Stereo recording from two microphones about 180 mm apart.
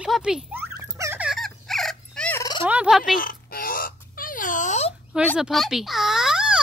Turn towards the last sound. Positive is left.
turn(degrees=-5)  # may be behind; listen again after turning